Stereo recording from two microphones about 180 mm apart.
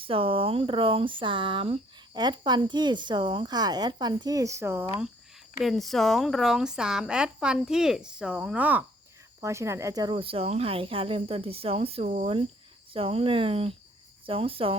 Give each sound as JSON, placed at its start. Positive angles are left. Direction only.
{"t": 0.0, "sound": "speech", "side_deg": -30}
{"t": 5.5, "sound": "speech", "side_deg": 0}